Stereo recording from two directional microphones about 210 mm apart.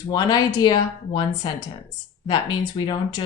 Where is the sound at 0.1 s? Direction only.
20° left (ahead or behind).